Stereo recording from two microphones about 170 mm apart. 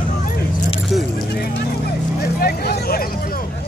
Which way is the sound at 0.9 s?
Centre (ahead or behind).